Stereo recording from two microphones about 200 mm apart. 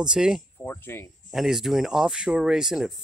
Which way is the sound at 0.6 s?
10° left (ahead or behind).